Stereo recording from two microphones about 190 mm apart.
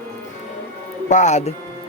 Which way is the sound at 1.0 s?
40° left (ahead or behind).